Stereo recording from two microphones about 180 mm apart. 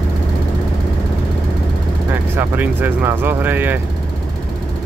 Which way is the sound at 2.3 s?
10° right (ahead or behind).